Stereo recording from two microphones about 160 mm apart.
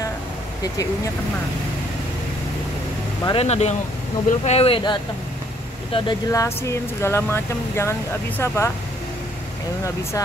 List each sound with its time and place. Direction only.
3.3 s speech: 40° left (ahead or behind)
5.9 s speech: 25° left (ahead or behind)